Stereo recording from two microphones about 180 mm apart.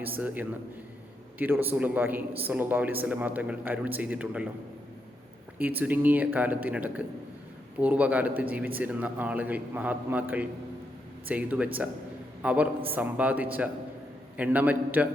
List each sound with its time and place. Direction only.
1.4 s speech: 10° right (ahead or behind)
5.5 s a man's voice: 10° right (ahead or behind)